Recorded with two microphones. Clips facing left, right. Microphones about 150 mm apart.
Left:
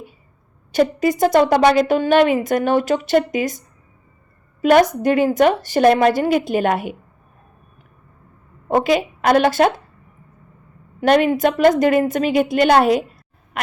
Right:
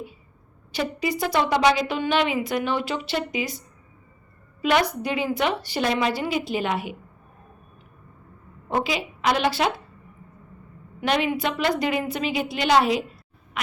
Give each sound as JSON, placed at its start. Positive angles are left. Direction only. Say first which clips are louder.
{"t": 0.7, "sound": "a woman's voice", "louder": "left 9 dB", "side_deg": 45}
{"t": 4.6, "sound": "a woman's voice", "louder": "left 9 dB", "side_deg": 45}
{"t": 8.7, "sound": "a woman's voice", "louder": "left 9 dB", "side_deg": 50}
{"t": 11.0, "sound": "a woman's voice", "louder": "left 9 dB", "side_deg": 50}